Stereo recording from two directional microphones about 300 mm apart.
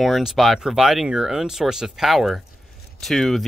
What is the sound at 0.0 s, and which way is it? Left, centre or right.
Speech, centre.